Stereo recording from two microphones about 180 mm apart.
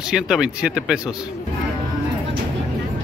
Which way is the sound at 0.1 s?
5° right (ahead or behind).